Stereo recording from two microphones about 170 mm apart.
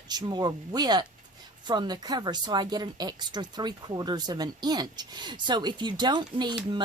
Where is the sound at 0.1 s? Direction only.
25° right (ahead or behind).